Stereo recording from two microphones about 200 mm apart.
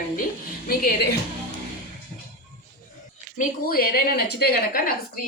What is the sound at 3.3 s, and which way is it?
A woman's voice, 45° left (ahead or behind).